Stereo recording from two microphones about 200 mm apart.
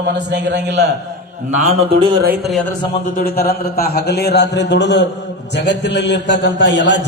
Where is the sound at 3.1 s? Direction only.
50° left (ahead or behind).